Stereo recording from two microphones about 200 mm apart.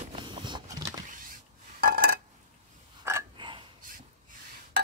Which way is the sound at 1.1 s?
45° right (ahead or behind).